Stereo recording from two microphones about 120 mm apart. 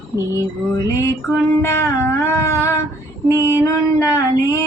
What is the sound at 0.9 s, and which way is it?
Female singing, 25° left (ahead or behind).